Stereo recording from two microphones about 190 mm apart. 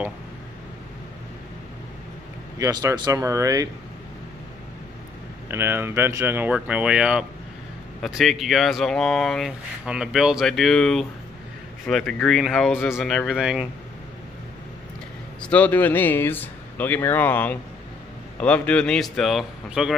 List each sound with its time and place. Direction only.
2.6 s speech: 15° right (ahead or behind)
5.5 s speech: 10° right (ahead or behind)
15.4 s speech: 10° left (ahead or behind)